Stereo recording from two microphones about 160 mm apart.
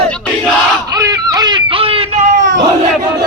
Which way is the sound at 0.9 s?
20° right (ahead or behind).